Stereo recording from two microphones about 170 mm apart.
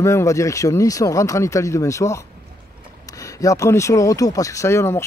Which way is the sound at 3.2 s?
20° left (ahead or behind).